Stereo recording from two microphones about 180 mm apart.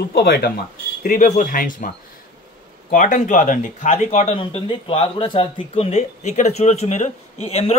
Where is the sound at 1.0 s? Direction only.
45° left (ahead or behind).